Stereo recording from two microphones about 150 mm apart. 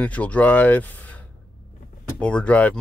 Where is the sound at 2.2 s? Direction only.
5° left (ahead or behind).